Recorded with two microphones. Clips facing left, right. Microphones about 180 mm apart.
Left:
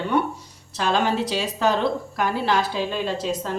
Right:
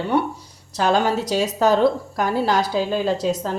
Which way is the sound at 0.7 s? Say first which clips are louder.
Right 3 dB; 40° right (ahead or behind).